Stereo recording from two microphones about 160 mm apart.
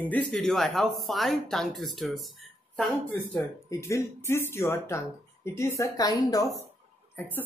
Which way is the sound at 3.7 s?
20° left (ahead or behind).